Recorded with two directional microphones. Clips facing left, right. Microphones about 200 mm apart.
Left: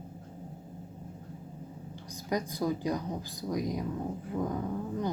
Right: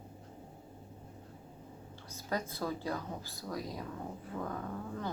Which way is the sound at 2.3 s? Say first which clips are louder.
Left 5 dB; 15° left (ahead or behind).